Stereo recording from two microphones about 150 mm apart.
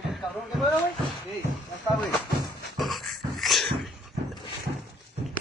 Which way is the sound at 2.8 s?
Centre (ahead or behind).